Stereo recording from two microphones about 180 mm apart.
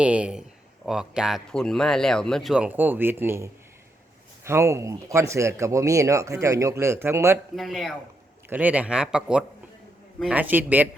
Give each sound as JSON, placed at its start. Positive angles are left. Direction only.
{"t": 0.0, "sound": "speech", "side_deg": -5}
{"t": 7.5, "sound": "speech", "side_deg": 0}